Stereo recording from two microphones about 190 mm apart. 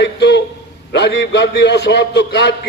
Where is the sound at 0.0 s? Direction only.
65° left (ahead or behind).